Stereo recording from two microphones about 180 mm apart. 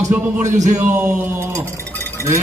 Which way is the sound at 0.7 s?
10° right (ahead or behind).